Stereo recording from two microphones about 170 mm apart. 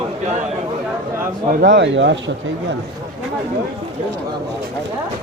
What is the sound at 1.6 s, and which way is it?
Speech, 90° right.